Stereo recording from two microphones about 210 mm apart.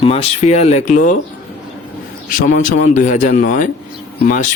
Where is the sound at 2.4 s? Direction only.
35° left (ahead or behind).